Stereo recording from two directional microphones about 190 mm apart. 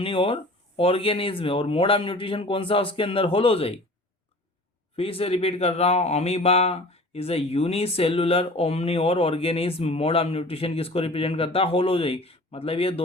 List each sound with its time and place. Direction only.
0.0 s a man's voice: 30° left (ahead or behind)
4.9 s a man's voice: 30° left (ahead or behind)